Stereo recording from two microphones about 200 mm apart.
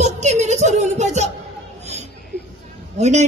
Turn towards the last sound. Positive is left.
turn(degrees=-35)  # may be behind; listen again after turning